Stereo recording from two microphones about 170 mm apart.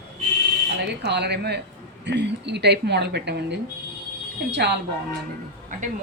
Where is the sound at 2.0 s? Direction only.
85° right.